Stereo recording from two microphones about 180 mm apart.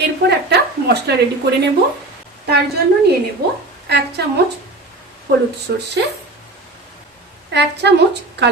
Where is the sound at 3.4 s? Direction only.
60° right (ahead or behind).